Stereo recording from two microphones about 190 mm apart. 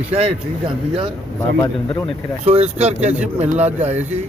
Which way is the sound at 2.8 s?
35° right (ahead or behind).